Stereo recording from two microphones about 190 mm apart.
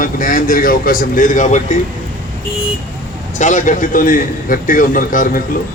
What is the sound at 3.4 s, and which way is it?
A man's voice, 40° left (ahead or behind).